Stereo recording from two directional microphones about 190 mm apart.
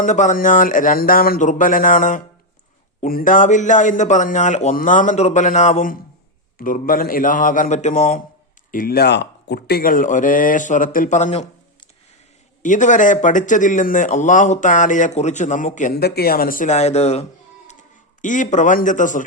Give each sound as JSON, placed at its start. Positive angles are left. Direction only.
{"t": 0.0, "sound": "speech", "side_deg": 40}
{"t": 8.7, "sound": "speech", "side_deg": 50}